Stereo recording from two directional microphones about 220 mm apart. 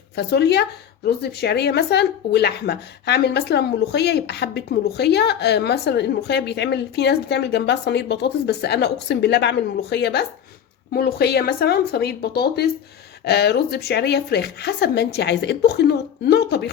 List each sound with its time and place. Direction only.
0.2 s speech: 50° left (ahead or behind)